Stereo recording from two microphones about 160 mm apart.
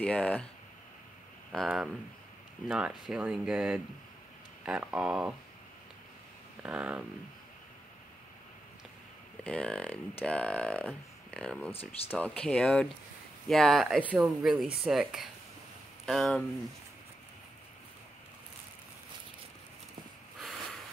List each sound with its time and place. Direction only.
0.0 s speech: 5° left (ahead or behind)
1.5 s speech: centre (ahead or behind)
6.6 s speech: 10° right (ahead or behind)
9.4 s speech: 5° left (ahead or behind)